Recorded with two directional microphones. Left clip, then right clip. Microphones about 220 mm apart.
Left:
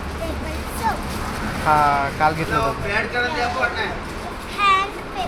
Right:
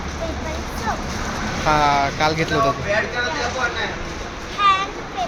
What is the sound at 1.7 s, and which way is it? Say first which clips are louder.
Speech: even; 25° right (ahead or behind).